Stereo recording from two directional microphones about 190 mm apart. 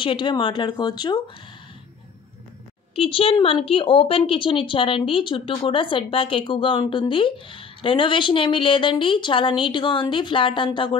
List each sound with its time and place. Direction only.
0.0 s a woman's voice: 25° left (ahead or behind)
3.0 s a woman's voice: 30° left (ahead or behind)